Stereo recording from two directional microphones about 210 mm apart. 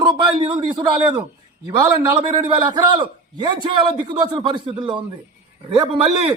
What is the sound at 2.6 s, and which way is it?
A man's voice, 20° right (ahead or behind).